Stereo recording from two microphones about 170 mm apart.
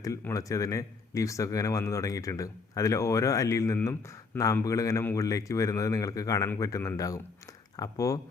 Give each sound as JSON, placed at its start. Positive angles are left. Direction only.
{"t": 0.0, "sound": "speech", "side_deg": 20}